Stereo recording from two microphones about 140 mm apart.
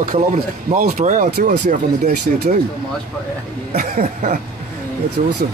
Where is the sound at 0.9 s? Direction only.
65° right (ahead or behind).